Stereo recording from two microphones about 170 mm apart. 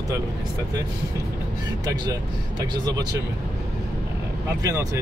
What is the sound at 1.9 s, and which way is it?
Speech, 25° right (ahead or behind).